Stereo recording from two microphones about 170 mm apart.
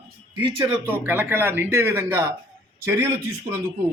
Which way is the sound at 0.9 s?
10° right (ahead or behind).